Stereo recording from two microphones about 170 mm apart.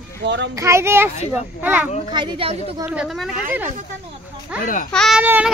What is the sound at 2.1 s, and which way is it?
Speech, 25° right (ahead or behind).